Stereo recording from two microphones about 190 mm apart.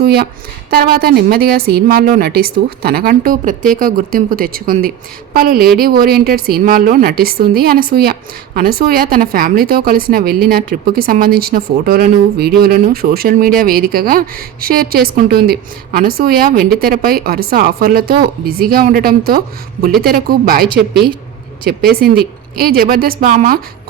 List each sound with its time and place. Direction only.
0.0 s a woman's voice: 55° right (ahead or behind)